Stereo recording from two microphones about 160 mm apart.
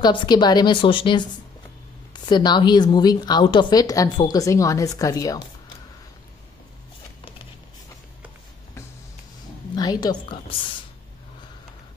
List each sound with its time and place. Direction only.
0.0 s a woman's voice: 25° left (ahead or behind)
9.8 s a woman's voice: 25° left (ahead or behind)